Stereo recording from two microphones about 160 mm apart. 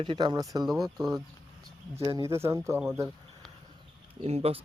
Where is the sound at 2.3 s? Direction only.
20° right (ahead or behind).